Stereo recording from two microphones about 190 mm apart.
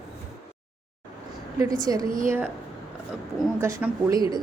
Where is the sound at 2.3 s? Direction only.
10° right (ahead or behind).